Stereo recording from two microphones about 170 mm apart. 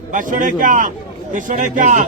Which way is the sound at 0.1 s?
50° right (ahead or behind).